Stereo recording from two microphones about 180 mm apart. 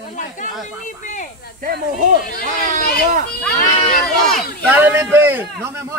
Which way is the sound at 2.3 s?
55° left (ahead or behind).